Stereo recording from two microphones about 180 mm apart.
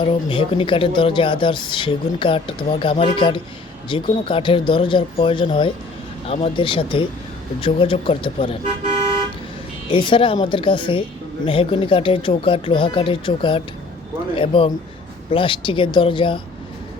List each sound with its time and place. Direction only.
0.0 s speech: 30° left (ahead or behind)
9.9 s speech: 25° left (ahead or behind)